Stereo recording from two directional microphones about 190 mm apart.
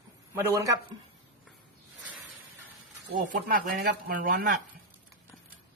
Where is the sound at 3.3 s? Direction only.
55° right (ahead or behind).